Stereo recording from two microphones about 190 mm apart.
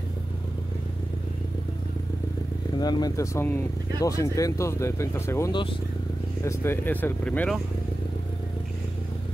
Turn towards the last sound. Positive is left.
turn(degrees=5)  # may be behind; listen again after turning